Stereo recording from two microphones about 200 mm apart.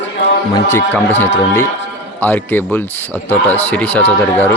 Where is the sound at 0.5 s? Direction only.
10° left (ahead or behind).